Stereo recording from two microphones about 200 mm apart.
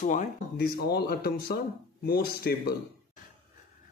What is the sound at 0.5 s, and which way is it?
Speech, 50° left (ahead or behind).